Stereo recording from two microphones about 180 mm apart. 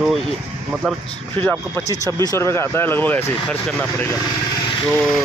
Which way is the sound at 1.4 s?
15° left (ahead or behind).